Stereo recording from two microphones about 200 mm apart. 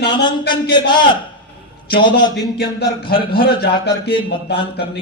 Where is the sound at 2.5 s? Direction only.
55° left (ahead or behind).